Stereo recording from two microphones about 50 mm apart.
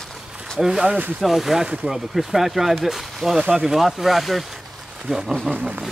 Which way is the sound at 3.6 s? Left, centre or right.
Centre.